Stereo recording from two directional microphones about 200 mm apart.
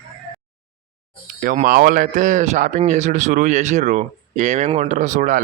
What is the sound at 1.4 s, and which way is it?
Speech, 40° right (ahead or behind).